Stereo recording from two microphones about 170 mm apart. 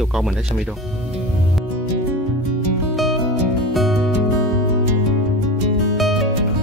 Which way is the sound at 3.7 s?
Centre (ahead or behind).